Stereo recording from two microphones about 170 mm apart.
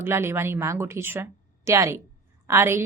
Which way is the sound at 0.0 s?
15° right (ahead or behind).